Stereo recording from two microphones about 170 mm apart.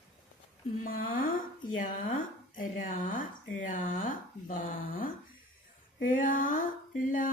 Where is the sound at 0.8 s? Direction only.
55° left (ahead or behind).